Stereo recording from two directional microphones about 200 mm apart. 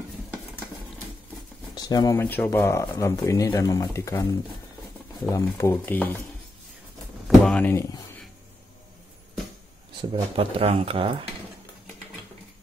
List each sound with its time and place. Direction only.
1.8 s speech: 20° left (ahead or behind)
7.2 s speech: 5° left (ahead or behind)
10.0 s speech: 25° right (ahead or behind)